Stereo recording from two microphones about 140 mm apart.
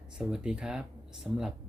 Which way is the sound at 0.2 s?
5° right (ahead or behind).